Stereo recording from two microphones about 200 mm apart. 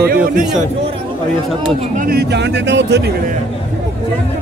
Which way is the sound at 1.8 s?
45° right (ahead or behind).